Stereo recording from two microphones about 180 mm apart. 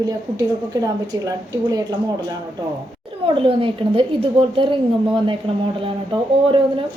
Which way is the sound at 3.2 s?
30° right (ahead or behind).